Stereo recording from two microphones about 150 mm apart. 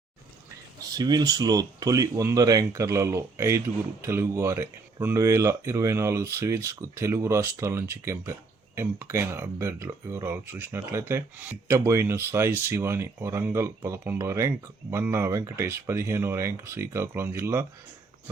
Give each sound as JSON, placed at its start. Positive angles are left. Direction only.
{"t": 0.8, "sound": "speech", "side_deg": -25}